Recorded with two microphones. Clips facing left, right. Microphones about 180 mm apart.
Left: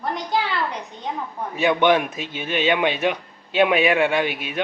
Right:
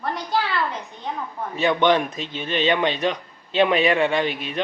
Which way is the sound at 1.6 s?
10° left (ahead or behind).